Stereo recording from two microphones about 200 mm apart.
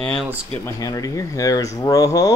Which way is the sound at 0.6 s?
15° left (ahead or behind).